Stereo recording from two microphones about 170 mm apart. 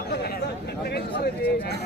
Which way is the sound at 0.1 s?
70° left (ahead or behind).